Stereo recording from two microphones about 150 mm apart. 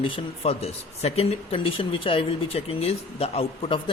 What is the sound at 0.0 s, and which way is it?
Speech, 40° left (ahead or behind).